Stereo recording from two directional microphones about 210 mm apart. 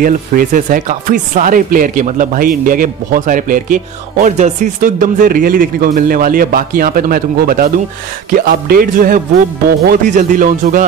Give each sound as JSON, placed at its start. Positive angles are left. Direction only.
{"t": 0.0, "sound": "speech", "side_deg": -40}